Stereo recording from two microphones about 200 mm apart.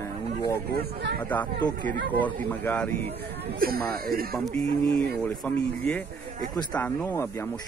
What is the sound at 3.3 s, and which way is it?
Speech, 50° right (ahead or behind).